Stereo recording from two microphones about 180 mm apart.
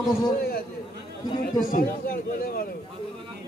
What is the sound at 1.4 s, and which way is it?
A man's voice, 55° left (ahead or behind).